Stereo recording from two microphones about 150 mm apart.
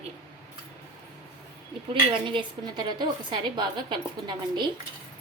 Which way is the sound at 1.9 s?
35° right (ahead or behind).